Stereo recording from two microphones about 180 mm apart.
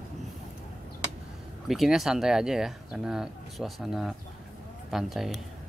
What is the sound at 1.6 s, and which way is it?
Speech, centre (ahead or behind).